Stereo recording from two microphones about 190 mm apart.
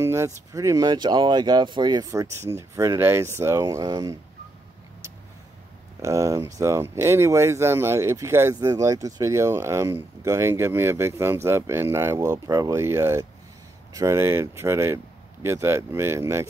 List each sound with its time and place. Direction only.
0.0 s speech: 15° right (ahead or behind)
6.0 s speech: 15° right (ahead or behind)